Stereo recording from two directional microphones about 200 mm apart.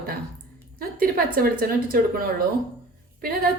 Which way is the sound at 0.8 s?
45° right (ahead or behind).